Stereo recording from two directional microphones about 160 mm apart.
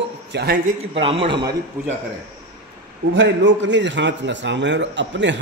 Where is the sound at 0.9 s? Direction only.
35° right (ahead or behind).